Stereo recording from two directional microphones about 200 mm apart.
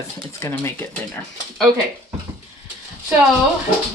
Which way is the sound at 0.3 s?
15° left (ahead or behind).